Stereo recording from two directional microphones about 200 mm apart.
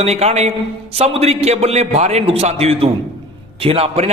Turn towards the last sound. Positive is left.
turn(degrees=-30)  # may be behind; listen again after turning